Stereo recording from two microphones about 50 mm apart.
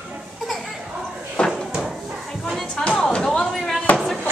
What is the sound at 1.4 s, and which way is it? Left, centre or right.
Cupboard open or close, left.